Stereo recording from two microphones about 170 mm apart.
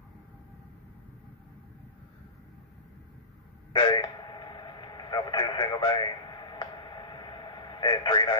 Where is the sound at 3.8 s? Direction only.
30° left (ahead or behind).